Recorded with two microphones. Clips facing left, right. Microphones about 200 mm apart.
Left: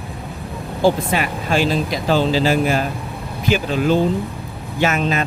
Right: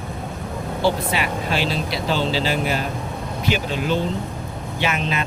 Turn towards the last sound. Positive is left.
turn(degrees=45)  # may be behind; listen again after turning